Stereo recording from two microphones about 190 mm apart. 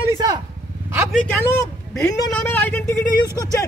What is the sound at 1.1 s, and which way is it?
Speech, 10° left (ahead or behind).